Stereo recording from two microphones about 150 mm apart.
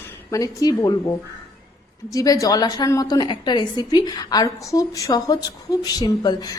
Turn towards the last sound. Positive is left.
turn(degrees=25)  # may be behind; listen again after turning